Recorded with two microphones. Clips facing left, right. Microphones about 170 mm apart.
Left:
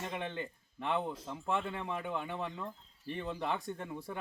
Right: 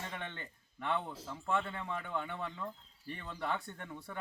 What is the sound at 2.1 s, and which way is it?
A man's voice, 15° left (ahead or behind).